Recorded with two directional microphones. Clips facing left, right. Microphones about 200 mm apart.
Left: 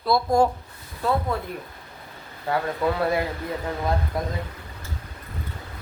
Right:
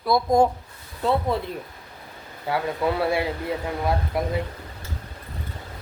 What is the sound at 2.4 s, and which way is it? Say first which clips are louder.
Speech: even; 10° right (ahead or behind).